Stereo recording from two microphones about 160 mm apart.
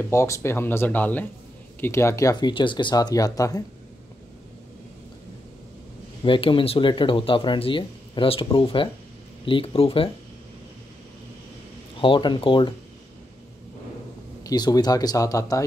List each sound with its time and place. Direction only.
0.1 s speech: 15° left (ahead or behind)
6.2 s speech: 30° left (ahead or behind)
12.0 s speech: 30° left (ahead or behind)
14.4 s speech: 25° left (ahead or behind)